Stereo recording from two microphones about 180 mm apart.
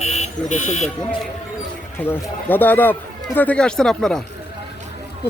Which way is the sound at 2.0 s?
10° left (ahead or behind).